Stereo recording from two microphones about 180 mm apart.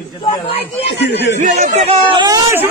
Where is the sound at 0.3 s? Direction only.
35° left (ahead or behind).